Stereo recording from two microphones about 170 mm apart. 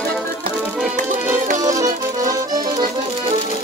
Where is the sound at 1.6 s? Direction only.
20° right (ahead or behind).